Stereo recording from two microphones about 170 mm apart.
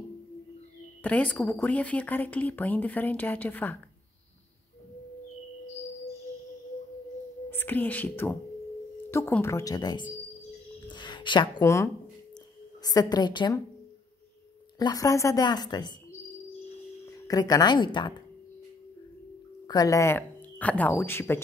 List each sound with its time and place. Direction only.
1.0 s a woman's voice: 10° left (ahead or behind)
7.5 s a woman's voice: 10° left (ahead or behind); by 13.6 s 25° left (ahead or behind)
14.8 s speech: 20° left (ahead or behind)
17.0 s speech: 20° left (ahead or behind)
19.7 s speech: 20° left (ahead or behind)